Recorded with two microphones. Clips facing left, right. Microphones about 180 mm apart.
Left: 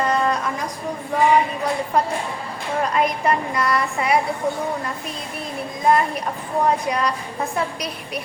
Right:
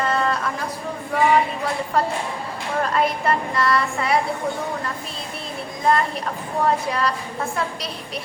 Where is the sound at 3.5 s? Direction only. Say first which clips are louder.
Right 1 dB; 20° left (ahead or behind).